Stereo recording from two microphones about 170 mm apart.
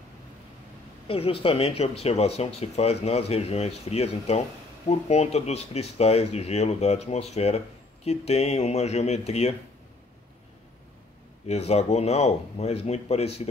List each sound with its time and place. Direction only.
1.0 s speech: 35° left (ahead or behind)
11.4 s speech: 40° left (ahead or behind)